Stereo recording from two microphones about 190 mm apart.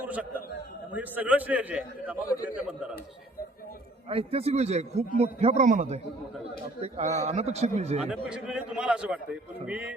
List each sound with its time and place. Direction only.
0.0 s a sound: 5° right (ahead or behind)
0.9 s a man's voice: 10° right (ahead or behind)
4.1 s a man's voice: 30° right (ahead or behind)
8.0 s a man's voice: 5° right (ahead or behind)